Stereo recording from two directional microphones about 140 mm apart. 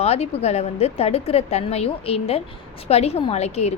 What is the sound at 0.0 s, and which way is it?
A woman's voice, 50° left (ahead or behind).